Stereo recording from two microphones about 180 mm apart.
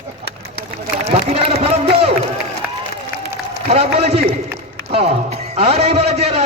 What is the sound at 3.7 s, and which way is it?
A man's voice, 35° right (ahead or behind).